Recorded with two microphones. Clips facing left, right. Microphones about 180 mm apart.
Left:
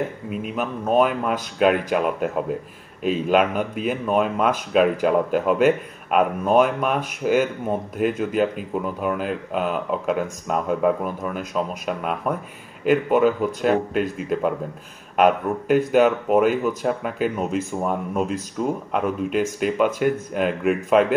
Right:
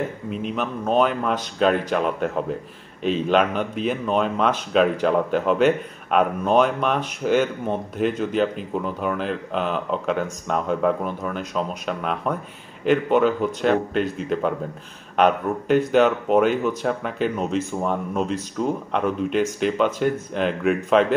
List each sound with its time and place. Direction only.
0.3 s speech: 5° left (ahead or behind)